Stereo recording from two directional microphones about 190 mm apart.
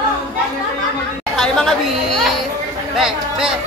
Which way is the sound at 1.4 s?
Centre (ahead or behind).